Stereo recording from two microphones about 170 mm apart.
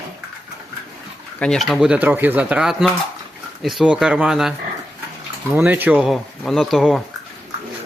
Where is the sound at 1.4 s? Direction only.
Centre (ahead or behind).